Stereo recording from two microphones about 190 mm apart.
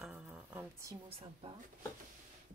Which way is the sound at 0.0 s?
5° right (ahead or behind).